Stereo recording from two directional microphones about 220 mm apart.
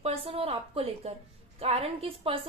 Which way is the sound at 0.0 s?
25° right (ahead or behind).